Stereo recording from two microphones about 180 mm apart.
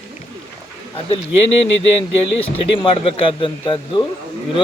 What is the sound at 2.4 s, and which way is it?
A man's voice, 30° left (ahead or behind).